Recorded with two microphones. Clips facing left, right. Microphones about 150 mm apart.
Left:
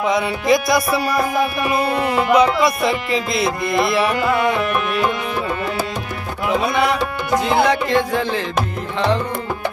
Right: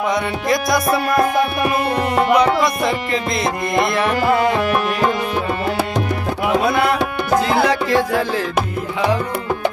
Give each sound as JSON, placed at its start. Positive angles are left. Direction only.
{"t": 0.1, "sound": "music", "side_deg": 0}
{"t": 2.3, "sound": "music", "side_deg": 5}
{"t": 4.2, "sound": "music", "side_deg": -35}
{"t": 6.7, "sound": "music", "side_deg": 0}